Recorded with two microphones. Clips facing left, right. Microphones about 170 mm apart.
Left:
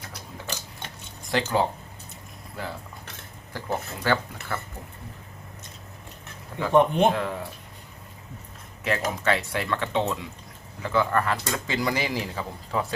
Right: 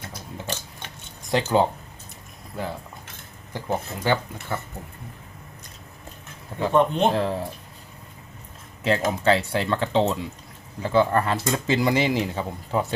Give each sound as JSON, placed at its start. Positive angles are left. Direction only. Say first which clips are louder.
{"t": 1.3, "sound": "speech", "louder": "right 4 dB", "side_deg": -25}
{"t": 3.5, "sound": "speech", "louder": "right 3 dB", "side_deg": -20}
{"t": 6.7, "sound": "speech", "louder": "left 1 dB", "side_deg": 10}
{"t": 7.1, "sound": "speech", "louder": "right 4 dB", "side_deg": -30}
{"t": 8.8, "sound": "speech", "louder": "right 5 dB", "side_deg": -25}